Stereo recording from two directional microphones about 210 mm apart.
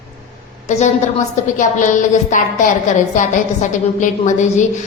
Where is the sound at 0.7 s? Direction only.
35° left (ahead or behind).